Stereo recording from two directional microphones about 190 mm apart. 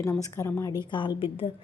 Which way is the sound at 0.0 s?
15° left (ahead or behind).